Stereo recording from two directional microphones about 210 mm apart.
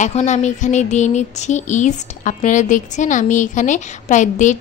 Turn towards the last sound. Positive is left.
turn(degrees=35)  # may be behind; listen again after turning